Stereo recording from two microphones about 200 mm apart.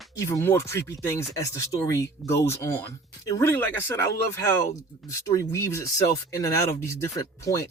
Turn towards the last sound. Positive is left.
turn(degrees=15)  # may be behind; listen again after turning